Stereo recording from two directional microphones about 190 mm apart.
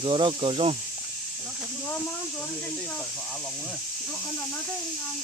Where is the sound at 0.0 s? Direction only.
25° right (ahead or behind).